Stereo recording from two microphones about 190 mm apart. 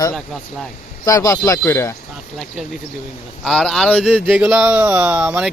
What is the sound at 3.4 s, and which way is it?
Speech, centre (ahead or behind).